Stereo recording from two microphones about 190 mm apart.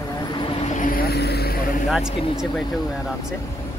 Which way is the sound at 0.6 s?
40° left (ahead or behind).